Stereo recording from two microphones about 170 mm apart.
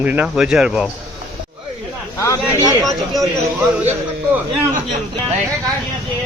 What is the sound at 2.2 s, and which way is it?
Speech, 20° left (ahead or behind).